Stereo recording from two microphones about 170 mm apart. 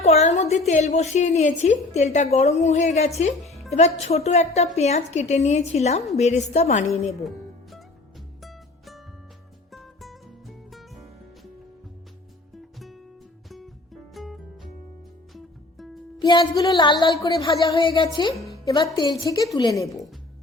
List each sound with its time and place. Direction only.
0.0 s a woman's voice: 40° left (ahead or behind)
3.4 s music: centre (ahead or behind)
3.8 s a woman's voice: 40° left (ahead or behind)
7.1 s music: centre (ahead or behind)
13.5 s music: centre (ahead or behind)
16.1 s speech: 25° left (ahead or behind)